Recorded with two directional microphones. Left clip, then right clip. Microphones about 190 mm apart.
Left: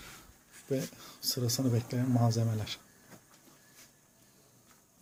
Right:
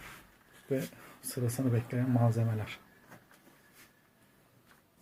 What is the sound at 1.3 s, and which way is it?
Speech, 15° left (ahead or behind).